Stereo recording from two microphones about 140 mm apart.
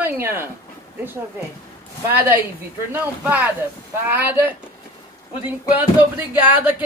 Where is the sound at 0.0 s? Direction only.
15° right (ahead or behind).